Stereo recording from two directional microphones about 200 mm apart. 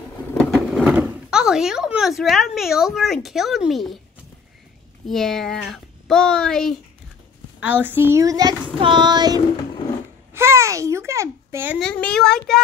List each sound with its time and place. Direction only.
0.4 s sewing machine: 5° left (ahead or behind)
0.9 s speech: 5° right (ahead or behind)
5.0 s speech: centre (ahead or behind)
7.6 s speech: 10° right (ahead or behind)
10.3 s babbling: 15° right (ahead or behind)
11.8 s speech: 5° left (ahead or behind)